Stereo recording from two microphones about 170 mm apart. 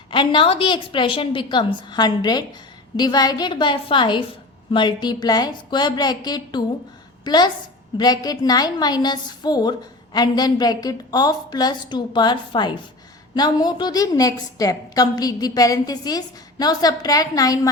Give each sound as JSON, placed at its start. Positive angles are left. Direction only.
{"t": 0.1, "sound": "a woman's voice", "side_deg": 30}